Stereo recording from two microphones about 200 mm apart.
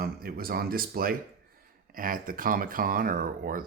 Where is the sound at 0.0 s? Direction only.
45° right (ahead or behind).